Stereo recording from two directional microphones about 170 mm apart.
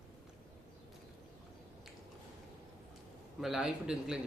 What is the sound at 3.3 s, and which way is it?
Speech, centre (ahead or behind).